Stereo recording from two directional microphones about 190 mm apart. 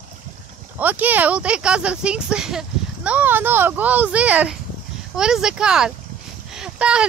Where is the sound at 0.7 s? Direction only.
10° right (ahead or behind).